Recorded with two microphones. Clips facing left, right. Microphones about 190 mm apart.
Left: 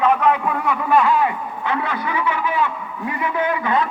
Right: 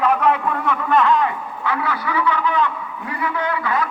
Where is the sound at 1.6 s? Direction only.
20° left (ahead or behind).